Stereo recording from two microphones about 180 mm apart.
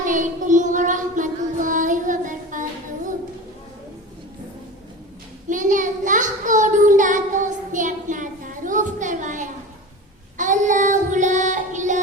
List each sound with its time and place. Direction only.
0.0 s child singing: 45° right (ahead or behind)
5.5 s child singing: 45° right (ahead or behind)